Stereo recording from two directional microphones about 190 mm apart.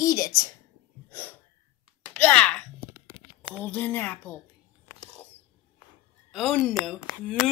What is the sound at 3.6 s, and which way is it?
Speech, 10° left (ahead or behind).